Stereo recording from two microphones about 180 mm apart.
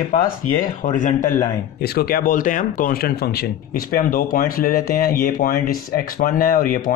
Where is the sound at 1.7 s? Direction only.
60° left (ahead or behind).